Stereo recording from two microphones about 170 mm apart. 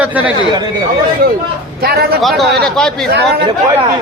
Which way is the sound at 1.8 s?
65° right (ahead or behind).